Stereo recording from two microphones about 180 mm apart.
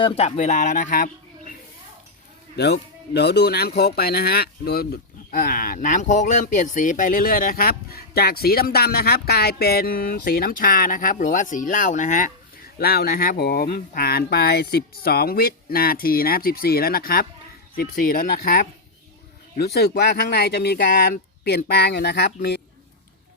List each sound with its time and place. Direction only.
0.0 s speech: 40° left (ahead or behind)
3.1 s speech: 65° left (ahead or behind); by 12.3 s 45° left (ahead or behind)
12.8 s speech: 60° left (ahead or behind)